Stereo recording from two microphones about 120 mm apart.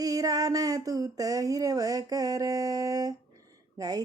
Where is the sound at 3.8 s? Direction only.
30° right (ahead or behind).